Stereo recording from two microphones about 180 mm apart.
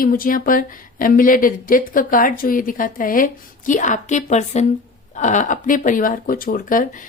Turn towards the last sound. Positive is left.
turn(degrees=50)  # may be behind; listen again after turning